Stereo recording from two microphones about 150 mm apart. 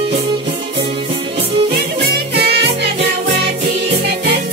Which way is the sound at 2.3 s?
90° right.